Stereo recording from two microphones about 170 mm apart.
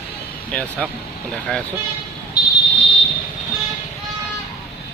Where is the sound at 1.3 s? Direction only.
5° left (ahead or behind).